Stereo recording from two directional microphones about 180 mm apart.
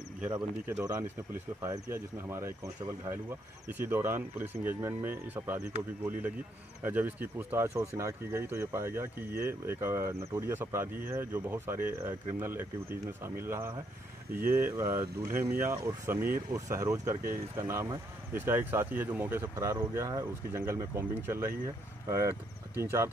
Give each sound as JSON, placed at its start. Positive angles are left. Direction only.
{"t": 0.2, "sound": "speech", "side_deg": -10}
{"t": 6.8, "sound": "speech", "side_deg": -10}
{"t": 22.8, "sound": "speech", "side_deg": -15}